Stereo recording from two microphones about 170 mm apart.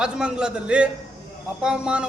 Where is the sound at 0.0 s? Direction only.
5° right (ahead or behind).